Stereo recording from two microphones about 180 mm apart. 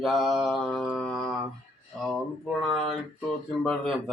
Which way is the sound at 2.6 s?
Centre (ahead or behind).